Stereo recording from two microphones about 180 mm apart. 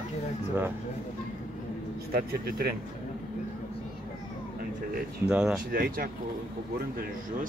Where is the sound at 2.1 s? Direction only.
55° right (ahead or behind).